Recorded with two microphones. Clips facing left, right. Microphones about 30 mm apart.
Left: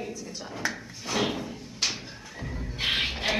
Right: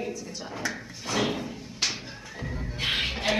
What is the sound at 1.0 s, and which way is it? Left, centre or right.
Door, centre.